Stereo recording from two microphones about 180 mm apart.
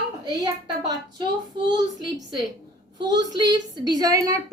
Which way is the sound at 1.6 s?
20° right (ahead or behind).